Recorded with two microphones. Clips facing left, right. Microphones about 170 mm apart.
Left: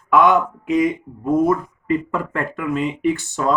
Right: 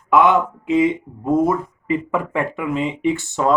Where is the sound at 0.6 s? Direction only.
25° right (ahead or behind).